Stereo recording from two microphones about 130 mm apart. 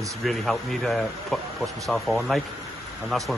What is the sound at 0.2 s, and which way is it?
Speech, centre (ahead or behind).